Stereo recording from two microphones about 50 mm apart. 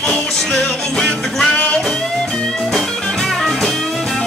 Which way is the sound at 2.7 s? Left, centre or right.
Centre.